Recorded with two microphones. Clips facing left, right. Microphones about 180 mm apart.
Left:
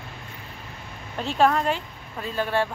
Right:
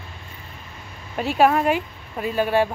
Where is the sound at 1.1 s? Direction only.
10° right (ahead or behind).